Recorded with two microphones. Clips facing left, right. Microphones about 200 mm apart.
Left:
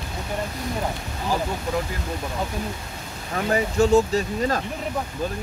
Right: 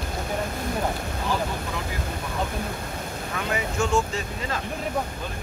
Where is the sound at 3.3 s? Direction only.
35° left (ahead or behind).